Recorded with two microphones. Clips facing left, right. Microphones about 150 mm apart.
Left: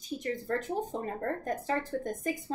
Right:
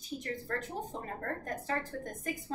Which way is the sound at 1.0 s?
20° left (ahead or behind).